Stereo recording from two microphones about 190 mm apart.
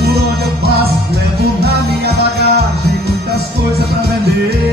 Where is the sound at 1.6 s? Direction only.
60° right (ahead or behind).